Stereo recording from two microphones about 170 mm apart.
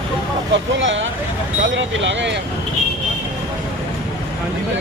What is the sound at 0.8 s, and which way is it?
Speech, 90° right.